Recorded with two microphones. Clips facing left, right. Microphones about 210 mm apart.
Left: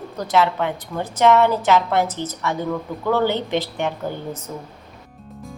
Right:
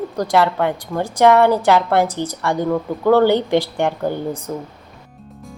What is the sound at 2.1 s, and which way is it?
Speech, 15° right (ahead or behind).